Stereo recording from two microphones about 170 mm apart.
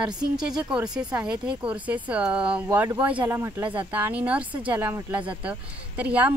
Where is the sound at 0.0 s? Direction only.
5° right (ahead or behind).